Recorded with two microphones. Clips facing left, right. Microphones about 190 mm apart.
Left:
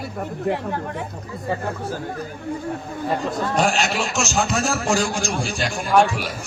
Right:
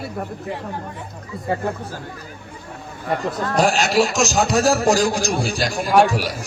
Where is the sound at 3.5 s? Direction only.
35° right (ahead or behind).